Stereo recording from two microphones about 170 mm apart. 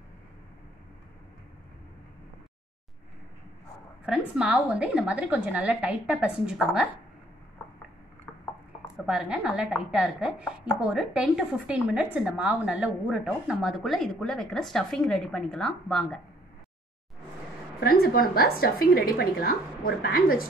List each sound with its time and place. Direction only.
4.4 s a woman's voice: 5° right (ahead or behind)
8.9 s chopping: 5° right (ahead or behind)
17.7 s a woman's voice: 60° left (ahead or behind)